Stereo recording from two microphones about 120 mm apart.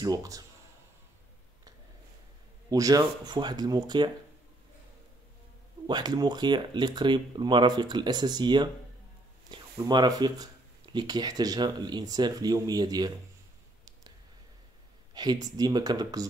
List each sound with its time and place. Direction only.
0.0 s speech: 30° right (ahead or behind)
2.7 s speech: 30° right (ahead or behind)
5.9 s speech: 35° right (ahead or behind)
15.1 s speech: 35° right (ahead or behind)